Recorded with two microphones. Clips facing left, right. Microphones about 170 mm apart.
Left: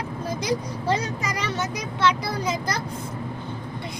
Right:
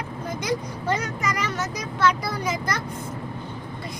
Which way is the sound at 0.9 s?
30° left (ahead or behind).